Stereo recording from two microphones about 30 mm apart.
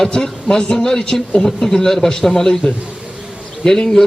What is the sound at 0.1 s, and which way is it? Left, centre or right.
A man's voice, left.